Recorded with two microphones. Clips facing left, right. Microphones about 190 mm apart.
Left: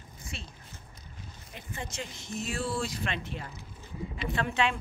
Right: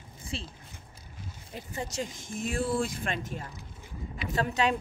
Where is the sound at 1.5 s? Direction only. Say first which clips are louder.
Right 5 dB; 40° right (ahead or behind).